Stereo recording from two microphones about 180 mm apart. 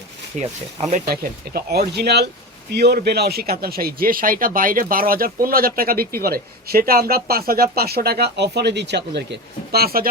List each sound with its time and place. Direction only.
0.3 s speech: 40° right (ahead or behind)
1.0 s speech: 55° right (ahead or behind)